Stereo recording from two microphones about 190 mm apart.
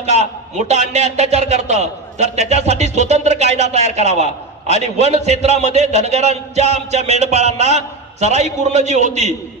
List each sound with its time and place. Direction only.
0.0 s speech: 35° right (ahead or behind)